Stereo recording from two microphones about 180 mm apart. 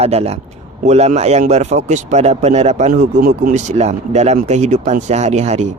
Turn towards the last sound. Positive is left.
turn(degrees=-40)  # may be behind; listen again after turning